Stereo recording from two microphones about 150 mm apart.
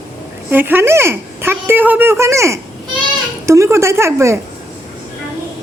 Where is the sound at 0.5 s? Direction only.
15° right (ahead or behind).